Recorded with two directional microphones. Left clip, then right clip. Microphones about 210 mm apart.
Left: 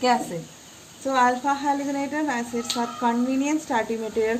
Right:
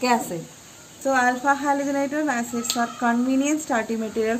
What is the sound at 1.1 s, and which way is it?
Speech, 50° right (ahead or behind).